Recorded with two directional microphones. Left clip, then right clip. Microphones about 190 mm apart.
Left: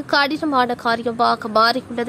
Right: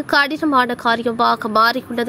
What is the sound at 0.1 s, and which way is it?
A woman's voice, 15° right (ahead or behind).